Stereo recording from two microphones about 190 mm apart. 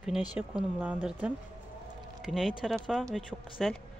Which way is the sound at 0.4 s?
10° right (ahead or behind).